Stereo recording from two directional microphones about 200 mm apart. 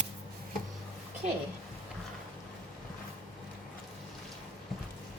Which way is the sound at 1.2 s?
40° right (ahead or behind).